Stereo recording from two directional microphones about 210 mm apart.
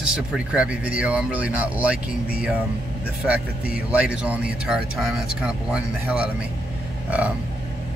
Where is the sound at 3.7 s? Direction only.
5° right (ahead or behind).